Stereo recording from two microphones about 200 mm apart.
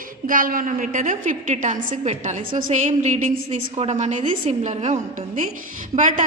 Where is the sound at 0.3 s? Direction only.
45° right (ahead or behind).